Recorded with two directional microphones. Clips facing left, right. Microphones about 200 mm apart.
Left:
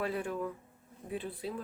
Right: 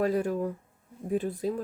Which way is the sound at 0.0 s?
40° right (ahead or behind).